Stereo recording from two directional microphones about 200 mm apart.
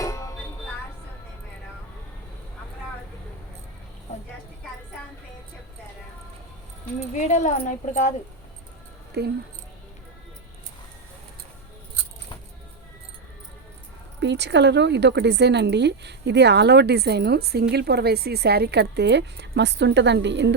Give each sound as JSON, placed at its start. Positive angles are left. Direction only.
{"t": 0.0, "sound": "music", "side_deg": 15}
{"t": 7.1, "sound": "speech", "side_deg": 35}
{"t": 9.2, "sound": "a woman's voice", "side_deg": -55}
{"t": 14.2, "sound": "a woman's voice", "side_deg": -60}